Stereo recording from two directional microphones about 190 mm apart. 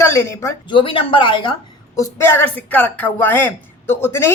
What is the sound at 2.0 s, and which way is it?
Speech, 15° left (ahead or behind).